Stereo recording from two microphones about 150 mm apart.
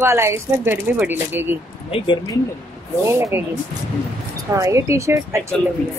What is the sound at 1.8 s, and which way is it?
Speech, 40° left (ahead or behind).